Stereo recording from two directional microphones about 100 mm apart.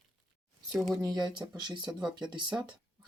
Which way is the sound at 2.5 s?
25° right (ahead or behind).